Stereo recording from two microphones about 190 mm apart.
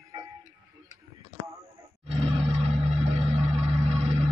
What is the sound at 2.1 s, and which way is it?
Roar, 35° right (ahead or behind).